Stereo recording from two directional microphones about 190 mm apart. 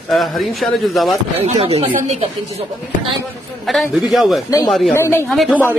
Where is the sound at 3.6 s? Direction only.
Centre (ahead or behind).